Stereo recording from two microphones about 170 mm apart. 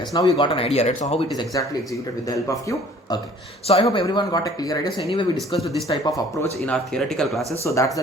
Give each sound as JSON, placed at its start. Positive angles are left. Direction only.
{"t": 0.1, "sound": "speech", "side_deg": 25}
{"t": 2.2, "sound": "speech", "side_deg": 20}
{"t": 3.7, "sound": "speech", "side_deg": 35}
{"t": 4.0, "sound": "speech", "side_deg": 25}
{"t": 5.9, "sound": "speech", "side_deg": 20}
{"t": 6.7, "sound": "speech", "side_deg": 5}
{"t": 7.6, "sound": "speech", "side_deg": 20}